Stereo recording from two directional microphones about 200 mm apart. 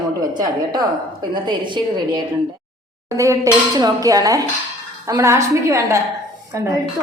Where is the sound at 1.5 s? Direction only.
20° right (ahead or behind).